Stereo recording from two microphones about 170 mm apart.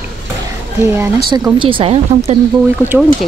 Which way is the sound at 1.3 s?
25° right (ahead or behind).